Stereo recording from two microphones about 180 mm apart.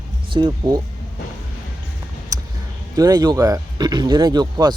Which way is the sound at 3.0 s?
20° right (ahead or behind).